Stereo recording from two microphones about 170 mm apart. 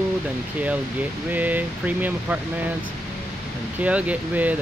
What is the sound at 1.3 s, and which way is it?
Speech, 10° right (ahead or behind).